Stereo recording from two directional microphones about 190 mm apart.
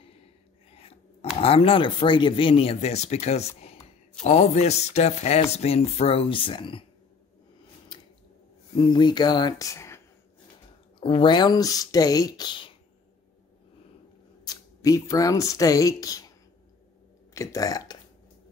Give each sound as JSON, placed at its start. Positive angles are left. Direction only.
{"t": 1.4, "sound": "speech", "side_deg": 30}
{"t": 8.7, "sound": "speech", "side_deg": 25}
{"t": 11.0, "sound": "speech", "side_deg": 30}
{"t": 14.4, "sound": "speech", "side_deg": 20}
{"t": 17.3, "sound": "speech", "side_deg": 15}